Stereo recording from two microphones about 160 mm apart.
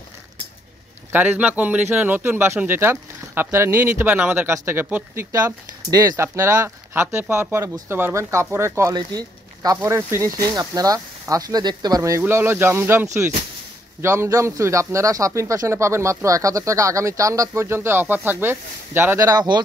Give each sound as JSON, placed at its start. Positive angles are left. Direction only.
{"t": 1.1, "sound": "speech", "side_deg": -10}